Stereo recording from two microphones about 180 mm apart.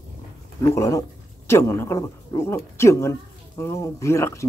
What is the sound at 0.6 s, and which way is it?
A man's voice, 20° left (ahead or behind).